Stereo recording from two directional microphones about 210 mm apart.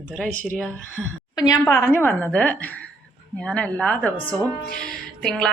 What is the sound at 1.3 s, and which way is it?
A woman's voice, 20° left (ahead or behind).